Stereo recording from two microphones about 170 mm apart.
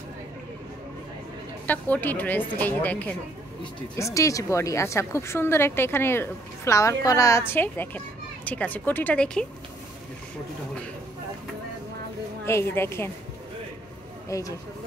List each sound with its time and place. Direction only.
1.7 s a woman's voice: 10° left (ahead or behind)
12.4 s a woman's voice: 15° left (ahead or behind)
14.3 s speech: 20° left (ahead or behind)